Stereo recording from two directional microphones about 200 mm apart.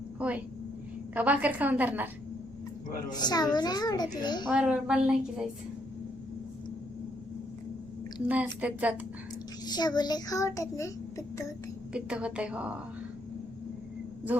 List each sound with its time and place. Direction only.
0.2 s a woman's voice: 5° right (ahead or behind)
3.1 s a child's voice: 20° left (ahead or behind)
4.4 s a woman's voice: 5° right (ahead or behind)
8.3 s a woman's voice: 5° right (ahead or behind)
9.6 s a child's voice: 20° left (ahead or behind)
11.9 s a woman's voice: 5° right (ahead or behind)